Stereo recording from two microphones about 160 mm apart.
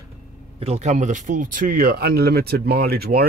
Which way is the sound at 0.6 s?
45° right (ahead or behind).